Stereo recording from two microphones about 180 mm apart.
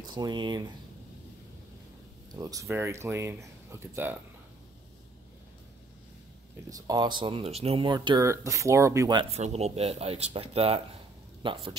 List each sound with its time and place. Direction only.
0.0 s speech: 25° right (ahead or behind)
2.3 s speech: 20° right (ahead or behind)
6.7 s speech: 20° right (ahead or behind)